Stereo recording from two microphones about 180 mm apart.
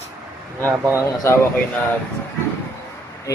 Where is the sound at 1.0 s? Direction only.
15° left (ahead or behind).